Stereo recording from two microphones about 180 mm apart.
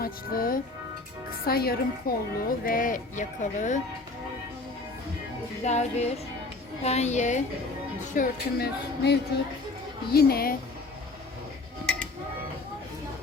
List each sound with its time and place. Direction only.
0.0 s a woman's voice: 55° left (ahead or behind)
5.6 s a woman's voice: 40° left (ahead or behind)
8.1 s music: 55° left (ahead or behind)